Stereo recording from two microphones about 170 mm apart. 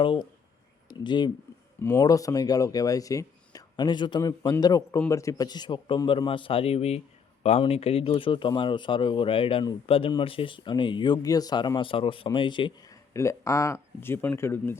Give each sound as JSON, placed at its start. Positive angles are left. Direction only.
{"t": 0.0, "sound": "speech", "side_deg": 30}
{"t": 1.8, "sound": "speech", "side_deg": 15}
{"t": 13.1, "sound": "speech", "side_deg": 15}